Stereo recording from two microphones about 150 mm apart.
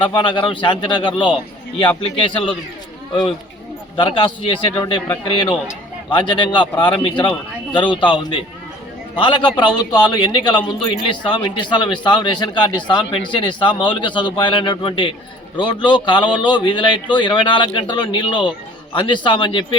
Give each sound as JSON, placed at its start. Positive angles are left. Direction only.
{"t": 0.0, "sound": "a man's voice", "side_deg": 30}
{"t": 3.9, "sound": "a man's voice", "side_deg": 35}